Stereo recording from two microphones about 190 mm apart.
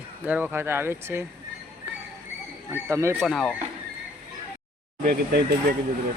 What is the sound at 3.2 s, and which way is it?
Speech, centre (ahead or behind).